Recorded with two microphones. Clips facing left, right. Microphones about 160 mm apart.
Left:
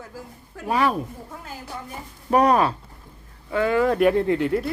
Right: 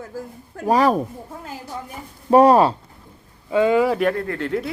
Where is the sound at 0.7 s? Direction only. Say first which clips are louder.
Right 5 dB; 40° right (ahead or behind).